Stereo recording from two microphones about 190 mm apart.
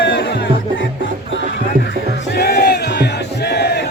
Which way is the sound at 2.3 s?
55° left (ahead or behind).